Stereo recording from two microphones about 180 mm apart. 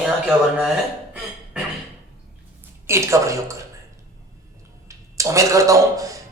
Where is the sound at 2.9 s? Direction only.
15° right (ahead or behind).